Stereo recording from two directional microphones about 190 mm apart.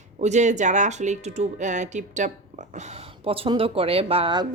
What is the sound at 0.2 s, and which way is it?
Speech, 35° right (ahead or behind).